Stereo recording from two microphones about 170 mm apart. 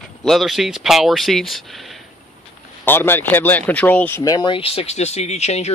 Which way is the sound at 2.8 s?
10° left (ahead or behind).